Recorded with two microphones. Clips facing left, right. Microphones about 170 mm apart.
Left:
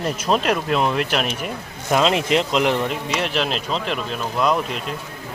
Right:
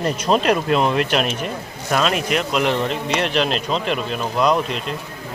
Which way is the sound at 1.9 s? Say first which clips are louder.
Left 2 dB; 20° left (ahead or behind).